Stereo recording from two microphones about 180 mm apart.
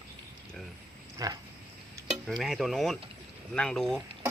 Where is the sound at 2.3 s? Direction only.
Centre (ahead or behind).